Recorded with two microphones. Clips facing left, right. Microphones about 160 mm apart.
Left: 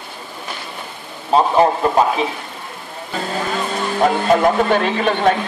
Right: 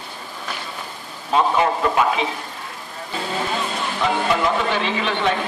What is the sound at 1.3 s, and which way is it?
Speech, 35° left (ahead or behind).